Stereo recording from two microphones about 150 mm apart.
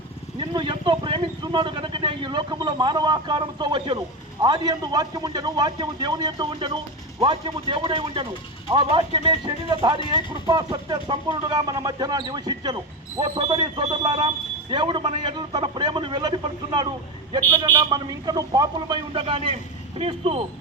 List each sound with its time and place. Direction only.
0.3 s speech: 30° right (ahead or behind)
19.1 s speech: 35° right (ahead or behind)